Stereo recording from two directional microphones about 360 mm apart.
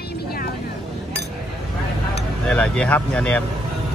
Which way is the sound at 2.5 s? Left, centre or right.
Centre.